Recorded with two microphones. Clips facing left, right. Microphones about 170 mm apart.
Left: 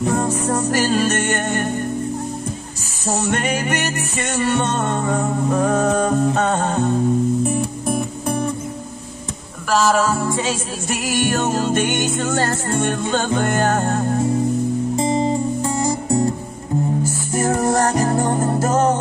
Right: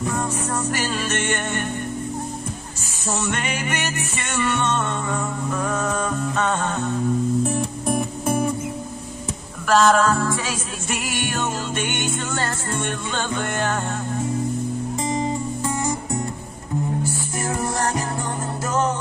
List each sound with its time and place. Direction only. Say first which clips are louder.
0.0 s music: left 6 dB; 40° left (ahead or behind)
3.1 s music: left 5 dB; 40° left (ahead or behind)
7.4 s music: left 2 dB; 5° left (ahead or behind)
9.7 s music: even; centre (ahead or behind)
10.3 s music: left 5 dB; 25° left (ahead or behind)
10.9 s music: left 7 dB; 40° left (ahead or behind)
15.0 s music: left 5 dB; 30° left (ahead or behind)
17.4 s music: left 8 dB; 45° left (ahead or behind)